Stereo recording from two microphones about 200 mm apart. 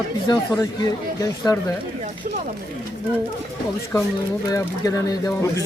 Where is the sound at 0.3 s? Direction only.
20° left (ahead or behind).